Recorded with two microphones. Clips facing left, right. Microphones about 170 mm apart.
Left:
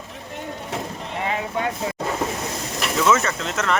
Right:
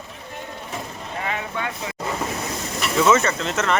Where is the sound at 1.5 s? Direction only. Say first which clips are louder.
Left 4 dB; 35° left (ahead or behind).